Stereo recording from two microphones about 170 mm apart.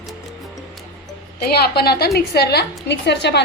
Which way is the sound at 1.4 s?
65° left (ahead or behind).